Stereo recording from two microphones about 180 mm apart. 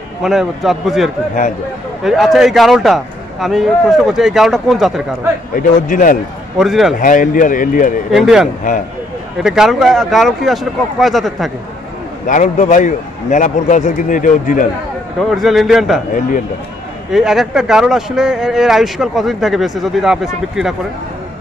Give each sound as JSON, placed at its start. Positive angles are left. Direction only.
{"t": 0.2, "sound": "speech", "side_deg": 0}
{"t": 5.5, "sound": "a man's voice", "side_deg": 50}
{"t": 6.6, "sound": "speech", "side_deg": 0}
{"t": 7.0, "sound": "a man's voice", "side_deg": 50}
{"t": 8.1, "sound": "speech", "side_deg": 0}
{"t": 12.3, "sound": "a man's voice", "side_deg": 45}
{"t": 15.1, "sound": "speech", "side_deg": 0}
{"t": 17.1, "sound": "speech", "side_deg": 0}